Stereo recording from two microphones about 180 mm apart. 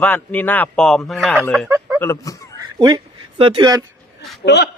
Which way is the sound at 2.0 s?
15° left (ahead or behind).